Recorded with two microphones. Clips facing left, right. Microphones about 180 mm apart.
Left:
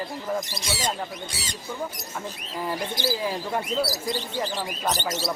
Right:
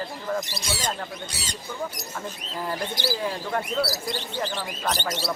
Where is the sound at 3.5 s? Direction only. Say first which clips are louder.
Right 1 dB; 15° left (ahead or behind).